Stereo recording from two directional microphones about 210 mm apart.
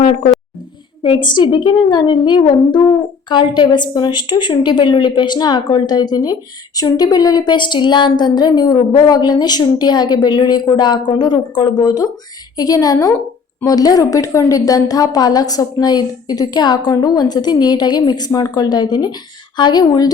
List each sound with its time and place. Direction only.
1.0 s a woman's voice: 25° left (ahead or behind)